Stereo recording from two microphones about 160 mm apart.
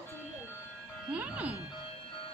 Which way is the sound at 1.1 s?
10° right (ahead or behind).